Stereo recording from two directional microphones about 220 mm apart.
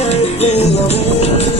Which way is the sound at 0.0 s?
30° left (ahead or behind).